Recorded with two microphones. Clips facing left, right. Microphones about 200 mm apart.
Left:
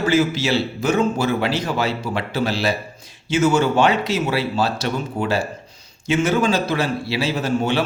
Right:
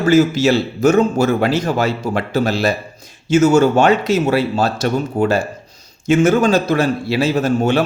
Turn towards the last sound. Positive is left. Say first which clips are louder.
# right 5 dB
turn(degrees=-45)  # may be behind; listen again after turning